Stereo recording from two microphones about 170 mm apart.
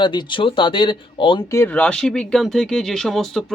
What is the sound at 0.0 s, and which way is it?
Speech, 25° left (ahead or behind).